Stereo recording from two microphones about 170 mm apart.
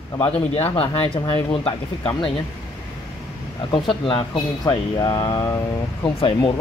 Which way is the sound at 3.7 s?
25° left (ahead or behind).